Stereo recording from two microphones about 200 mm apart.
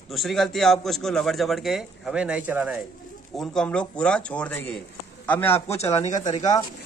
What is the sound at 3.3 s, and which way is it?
A man's voice, 5° left (ahead or behind).